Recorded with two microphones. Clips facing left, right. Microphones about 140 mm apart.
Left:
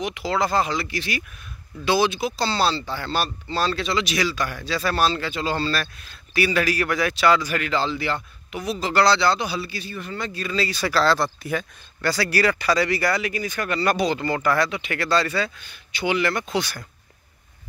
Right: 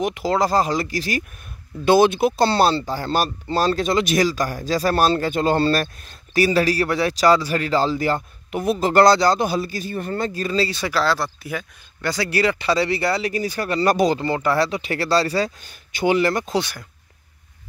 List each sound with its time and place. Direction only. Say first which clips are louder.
0.0 s speech: right 4 dB; 45° right (ahead or behind)
1.9 s speech: right 6 dB; 55° right (ahead or behind); by 10.8 s 35° right (ahead or behind)
10.8 s speech: left 1 dB; 15° right (ahead or behind); by 14.2 s 40° right (ahead or behind)
14.2 s speech: right 2 dB; 25° right (ahead or behind)